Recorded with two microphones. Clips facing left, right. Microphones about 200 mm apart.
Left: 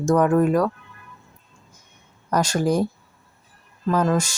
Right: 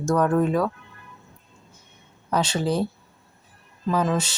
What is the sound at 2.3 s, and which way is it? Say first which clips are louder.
Speech: left 3 dB; 10° left (ahead or behind).